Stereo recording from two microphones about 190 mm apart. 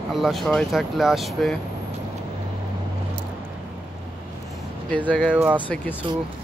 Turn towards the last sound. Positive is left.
turn(degrees=-25)  # may be behind; listen again after turning